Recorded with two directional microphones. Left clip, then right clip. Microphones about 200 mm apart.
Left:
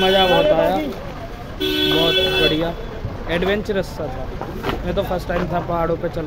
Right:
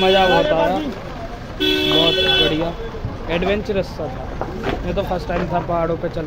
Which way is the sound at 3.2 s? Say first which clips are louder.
Even; 5° left (ahead or behind).